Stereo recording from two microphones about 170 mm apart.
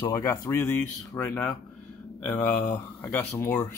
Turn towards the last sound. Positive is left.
turn(degrees=10)  # may be behind; listen again after turning